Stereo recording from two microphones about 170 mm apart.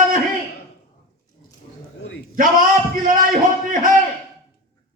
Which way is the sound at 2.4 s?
55° right (ahead or behind).